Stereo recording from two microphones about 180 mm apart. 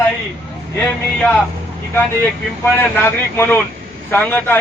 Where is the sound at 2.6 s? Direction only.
10° left (ahead or behind).